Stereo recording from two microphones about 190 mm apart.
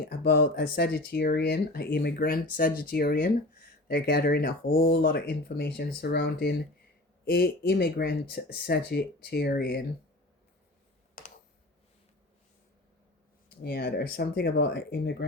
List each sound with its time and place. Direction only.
0.1 s speech: 55° left (ahead or behind)
13.6 s speech: 55° left (ahead or behind)